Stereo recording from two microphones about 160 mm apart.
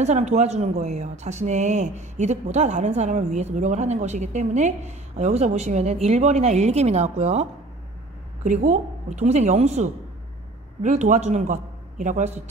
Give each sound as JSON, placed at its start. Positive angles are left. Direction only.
{"t": 0.0, "sound": "speech", "side_deg": -45}
{"t": 8.5, "sound": "a man's voice", "side_deg": -45}